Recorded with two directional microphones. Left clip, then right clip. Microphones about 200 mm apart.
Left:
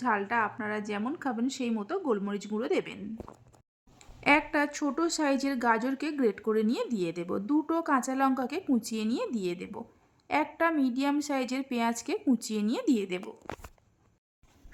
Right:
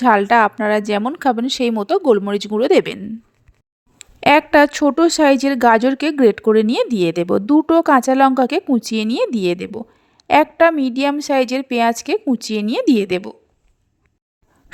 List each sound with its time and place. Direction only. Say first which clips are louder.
0.0 s speech: right 16 dB; 40° right (ahead or behind)